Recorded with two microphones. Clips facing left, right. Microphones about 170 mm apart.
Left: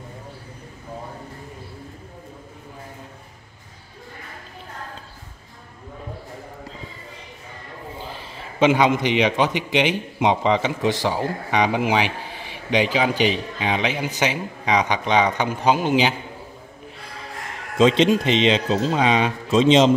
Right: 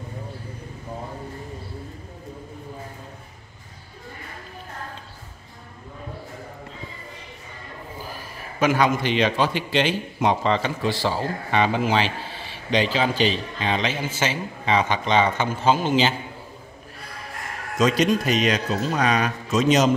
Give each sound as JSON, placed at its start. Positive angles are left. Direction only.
{"t": 8.0, "sound": "a man's voice", "side_deg": 25}
{"t": 17.7, "sound": "a man's voice", "side_deg": 25}